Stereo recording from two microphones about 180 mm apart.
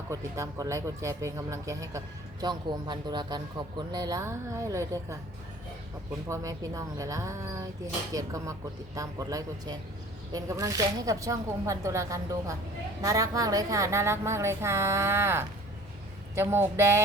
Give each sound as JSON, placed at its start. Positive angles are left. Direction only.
{"t": 0.1, "sound": "speech", "side_deg": -15}
{"t": 6.2, "sound": "speech", "side_deg": -15}